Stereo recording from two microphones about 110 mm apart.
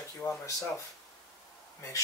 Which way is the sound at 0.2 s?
25° left (ahead or behind).